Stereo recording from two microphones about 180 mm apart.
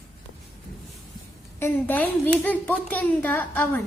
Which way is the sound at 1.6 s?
10° left (ahead or behind).